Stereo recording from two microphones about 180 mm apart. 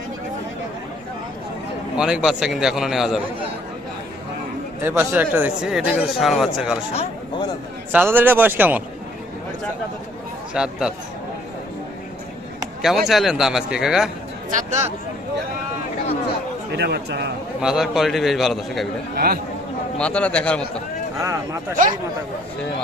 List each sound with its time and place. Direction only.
2.0 s a man's voice: 5° right (ahead or behind)
4.8 s a man's voice: 10° right (ahead or behind)
6.9 s speech: 35° left (ahead or behind)
7.9 s speech: 10° right (ahead or behind)
10.5 s a man's voice: 5° right (ahead or behind)
12.8 s a man's voice: centre (ahead or behind)
14.5 s speech: 40° right (ahead or behind)
16.7 s a man's voice: 65° right (ahead or behind)
17.6 s a man's voice: 5° right (ahead or behind)
19.1 s speech: 60° right (ahead or behind)
20.0 s a man's voice: 5° left (ahead or behind)
21.2 s speech: 20° right (ahead or behind)